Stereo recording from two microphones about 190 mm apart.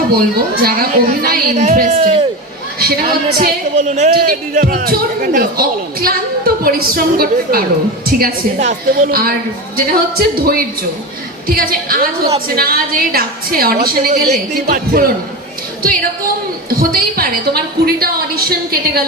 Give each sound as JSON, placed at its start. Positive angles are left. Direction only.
{"t": 0.5, "sound": "speech", "side_deg": -50}
{"t": 2.0, "sound": "a man's voice", "side_deg": -35}
{"t": 2.7, "sound": "speech", "side_deg": -50}
{"t": 3.8, "sound": "speech", "side_deg": -40}
{"t": 16.6, "sound": "speech", "side_deg": -50}